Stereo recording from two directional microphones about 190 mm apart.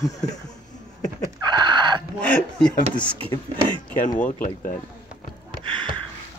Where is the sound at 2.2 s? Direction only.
5° left (ahead or behind).